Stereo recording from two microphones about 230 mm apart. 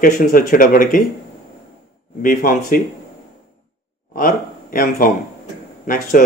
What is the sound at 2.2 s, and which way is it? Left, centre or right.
Speech, left.